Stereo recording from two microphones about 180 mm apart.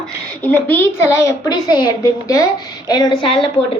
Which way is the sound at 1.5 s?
20° left (ahead or behind).